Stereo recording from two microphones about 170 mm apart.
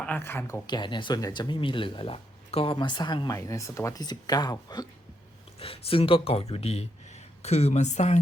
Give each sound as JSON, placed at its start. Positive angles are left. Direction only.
{"t": 0.0, "sound": "speech", "side_deg": 10}
{"t": 0.7, "sound": "speech", "side_deg": 25}
{"t": 5.5, "sound": "speech", "side_deg": 35}